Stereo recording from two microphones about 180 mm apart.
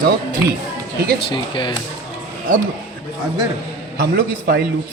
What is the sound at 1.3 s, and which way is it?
Speech, 25° left (ahead or behind).